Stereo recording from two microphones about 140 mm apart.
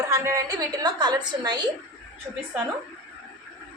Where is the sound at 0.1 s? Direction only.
20° right (ahead or behind).